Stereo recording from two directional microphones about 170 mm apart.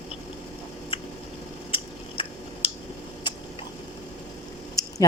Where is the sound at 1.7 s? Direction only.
30° left (ahead or behind).